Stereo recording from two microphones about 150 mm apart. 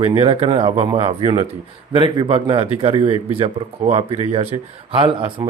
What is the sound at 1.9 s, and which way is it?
Speech, 35° right (ahead or behind).